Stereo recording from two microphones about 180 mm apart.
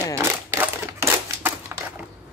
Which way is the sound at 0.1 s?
15° right (ahead or behind).